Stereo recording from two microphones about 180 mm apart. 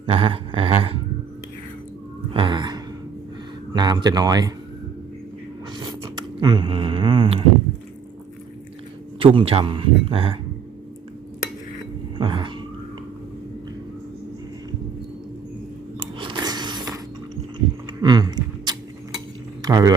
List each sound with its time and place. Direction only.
0.0 s speech: 30° right (ahead or behind)
2.3 s gasp: 25° right (ahead or behind)
3.7 s speech: 25° right (ahead or behind)
5.8 s speech: 25° right (ahead or behind)
9.1 s speech: 30° right (ahead or behind)
12.1 s cat: 25° right (ahead or behind)
16.1 s a sound: 25° right (ahead or behind)
18.0 s a sound: 25° right (ahead or behind)
19.6 s speech: 20° right (ahead or behind)